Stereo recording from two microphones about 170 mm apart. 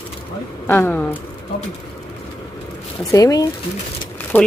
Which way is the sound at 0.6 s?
10° left (ahead or behind).